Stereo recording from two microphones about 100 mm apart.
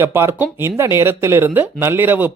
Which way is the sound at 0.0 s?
25° right (ahead or behind).